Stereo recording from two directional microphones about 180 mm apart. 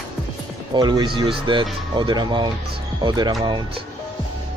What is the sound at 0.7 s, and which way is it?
Speech, 25° right (ahead or behind).